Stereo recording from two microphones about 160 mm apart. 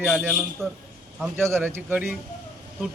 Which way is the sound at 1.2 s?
15° right (ahead or behind).